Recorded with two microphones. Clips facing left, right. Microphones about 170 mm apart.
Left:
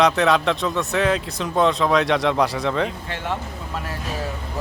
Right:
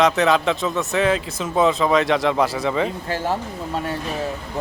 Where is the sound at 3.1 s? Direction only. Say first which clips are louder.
Right 5 dB; 35° right (ahead or behind).